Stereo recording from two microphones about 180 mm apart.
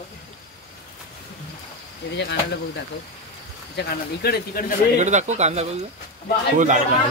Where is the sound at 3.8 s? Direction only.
60° left (ahead or behind).